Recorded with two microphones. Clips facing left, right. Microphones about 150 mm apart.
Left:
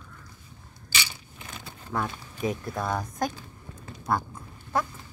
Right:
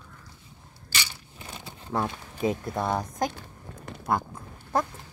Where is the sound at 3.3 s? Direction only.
70° right (ahead or behind).